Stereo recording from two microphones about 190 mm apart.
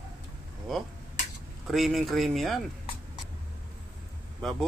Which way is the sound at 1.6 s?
Centre (ahead or behind).